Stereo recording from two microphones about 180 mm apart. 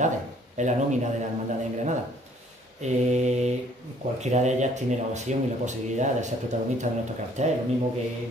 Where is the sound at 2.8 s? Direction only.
40° right (ahead or behind).